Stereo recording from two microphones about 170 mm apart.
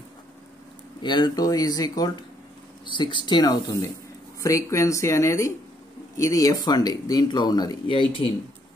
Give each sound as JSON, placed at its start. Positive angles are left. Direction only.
{"t": 1.0, "sound": "speech", "side_deg": 25}